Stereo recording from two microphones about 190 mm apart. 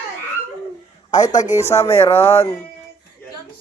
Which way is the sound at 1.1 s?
40° left (ahead or behind).